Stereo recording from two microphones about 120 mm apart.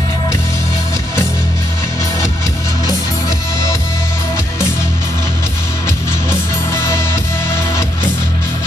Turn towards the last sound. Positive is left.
turn(degrees=20)  # may be behind; listen again after turning